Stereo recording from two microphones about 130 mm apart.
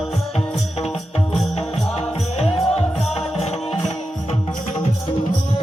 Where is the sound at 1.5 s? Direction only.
55° left (ahead or behind).